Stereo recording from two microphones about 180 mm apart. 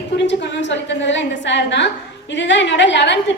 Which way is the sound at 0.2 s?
80° left.